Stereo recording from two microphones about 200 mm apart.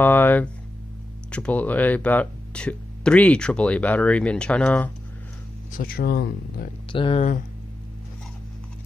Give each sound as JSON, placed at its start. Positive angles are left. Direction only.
{"t": 0.0, "sound": "speech", "side_deg": 10}
{"t": 5.7, "sound": "speech", "side_deg": 45}
{"t": 6.9, "sound": "speech", "side_deg": 25}